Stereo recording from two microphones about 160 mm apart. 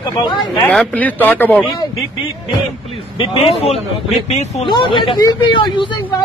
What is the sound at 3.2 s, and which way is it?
A man's voice, 35° left (ahead or behind).